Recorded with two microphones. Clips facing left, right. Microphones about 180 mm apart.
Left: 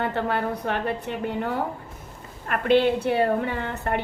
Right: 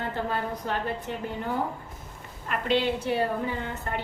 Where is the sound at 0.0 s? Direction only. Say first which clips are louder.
Left 5 dB; 65° left (ahead or behind).